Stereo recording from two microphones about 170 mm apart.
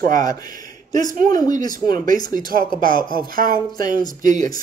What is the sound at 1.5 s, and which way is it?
Speech, 25° left (ahead or behind).